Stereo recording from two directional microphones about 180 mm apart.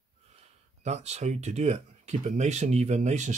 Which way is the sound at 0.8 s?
40° right (ahead or behind).